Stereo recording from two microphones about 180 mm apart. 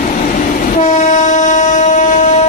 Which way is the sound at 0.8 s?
45° left (ahead or behind).